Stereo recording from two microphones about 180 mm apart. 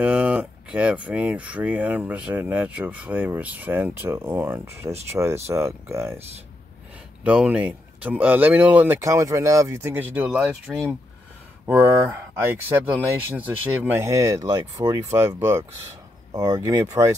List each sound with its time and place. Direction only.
0.0 s speech: 5° right (ahead or behind)
7.2 s speech: 5° right (ahead or behind)